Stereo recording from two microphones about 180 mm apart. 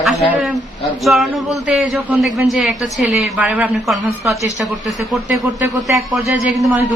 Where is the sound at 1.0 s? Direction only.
Centre (ahead or behind).